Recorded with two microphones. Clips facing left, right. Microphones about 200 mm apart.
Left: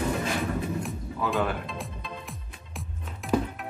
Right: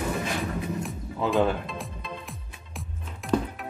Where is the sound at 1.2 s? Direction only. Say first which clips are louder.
Right 3 dB; 25° right (ahead or behind).